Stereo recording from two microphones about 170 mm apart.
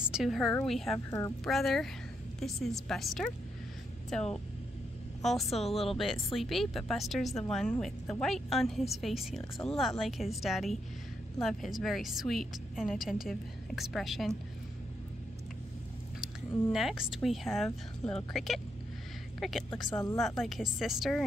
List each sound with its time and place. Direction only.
0.1 s speech: centre (ahead or behind)
0.9 s speech: 15° left (ahead or behind)
1.4 s speech: centre (ahead or behind)
16.7 s speech: centre (ahead or behind)
19.9 s speech: 20° left (ahead or behind)
20.2 s speech: centre (ahead or behind)